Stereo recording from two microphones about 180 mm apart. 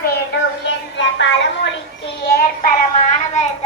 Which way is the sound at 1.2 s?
90° left.